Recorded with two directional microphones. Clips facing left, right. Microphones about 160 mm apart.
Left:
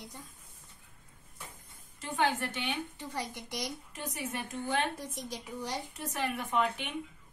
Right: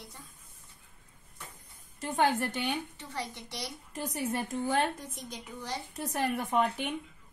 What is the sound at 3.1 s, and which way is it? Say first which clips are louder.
Speech: right 1 dB; 10° left (ahead or behind).